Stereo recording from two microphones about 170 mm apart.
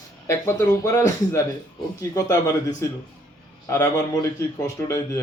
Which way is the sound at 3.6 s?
20° left (ahead or behind).